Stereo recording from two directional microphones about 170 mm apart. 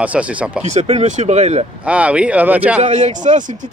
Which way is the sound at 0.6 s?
40° right (ahead or behind).